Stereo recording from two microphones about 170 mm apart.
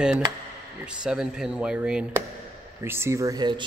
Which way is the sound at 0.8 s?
5° right (ahead or behind).